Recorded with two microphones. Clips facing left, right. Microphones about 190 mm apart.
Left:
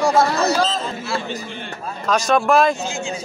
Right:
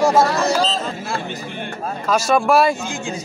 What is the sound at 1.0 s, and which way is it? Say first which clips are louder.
Speech: left 1 dB; 50° right (ahead or behind).